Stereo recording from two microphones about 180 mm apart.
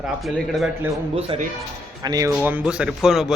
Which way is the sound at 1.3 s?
30° right (ahead or behind).